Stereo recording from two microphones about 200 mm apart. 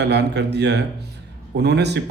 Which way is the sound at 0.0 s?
60° right (ahead or behind).